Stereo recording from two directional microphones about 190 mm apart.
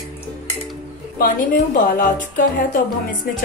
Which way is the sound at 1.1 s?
50° left (ahead or behind).